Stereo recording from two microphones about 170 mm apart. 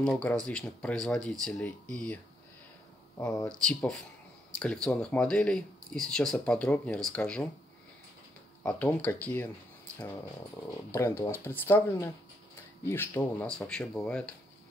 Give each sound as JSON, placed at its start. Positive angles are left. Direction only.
{"t": 0.0, "sound": "speech", "side_deg": 5}
{"t": 3.4, "sound": "speech", "side_deg": 5}
{"t": 8.6, "sound": "speech", "side_deg": 10}
{"t": 10.9, "sound": "speech", "side_deg": 15}